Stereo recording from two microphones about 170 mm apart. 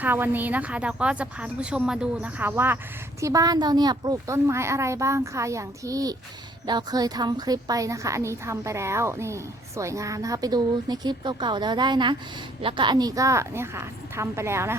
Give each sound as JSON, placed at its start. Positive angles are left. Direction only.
{"t": 0.0, "sound": "a woman's voice", "side_deg": -10}